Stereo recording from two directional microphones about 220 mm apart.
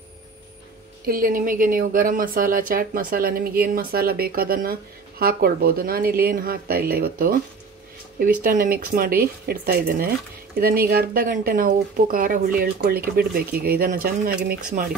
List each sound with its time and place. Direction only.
1.0 s speech: 40° right (ahead or behind)